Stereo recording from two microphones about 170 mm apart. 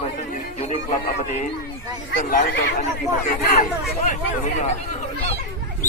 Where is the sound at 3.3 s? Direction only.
55° left (ahead or behind).